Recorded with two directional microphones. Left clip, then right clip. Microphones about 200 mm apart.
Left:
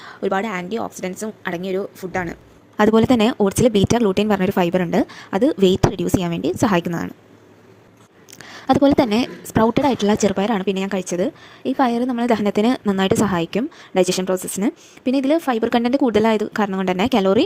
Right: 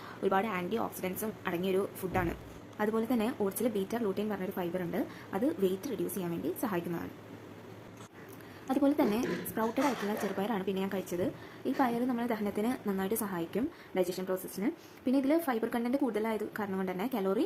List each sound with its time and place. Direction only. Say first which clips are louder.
0.0 s a woman's voice: left 9 dB; 30° left (ahead or behind)
2.7 s a woman's voice: left 17 dB; 50° left (ahead or behind)
8.6 s a woman's voice: left 14 dB; 45° left (ahead or behind)
9.6 s a woman's voice: left 13 dB; centre (ahead or behind)
10.1 s a woman's voice: left 15 dB; 45° left (ahead or behind)